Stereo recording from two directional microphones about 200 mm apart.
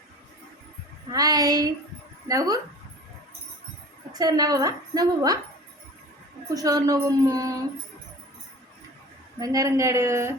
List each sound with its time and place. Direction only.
1.1 s a woman's voice: 20° right (ahead or behind)
4.2 s a woman's voice: 20° right (ahead or behind)
6.5 s speech: 20° right (ahead or behind)
9.4 s speech: 15° right (ahead or behind)